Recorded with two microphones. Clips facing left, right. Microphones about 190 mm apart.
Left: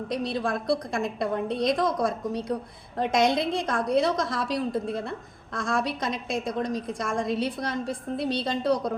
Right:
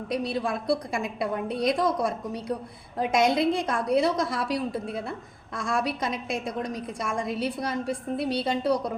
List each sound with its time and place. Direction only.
0.1 s a woman's voice: 5° right (ahead or behind)